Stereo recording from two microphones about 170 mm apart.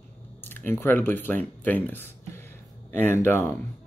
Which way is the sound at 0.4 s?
10° left (ahead or behind).